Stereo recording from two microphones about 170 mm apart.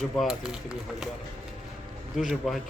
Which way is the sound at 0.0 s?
Centre (ahead or behind).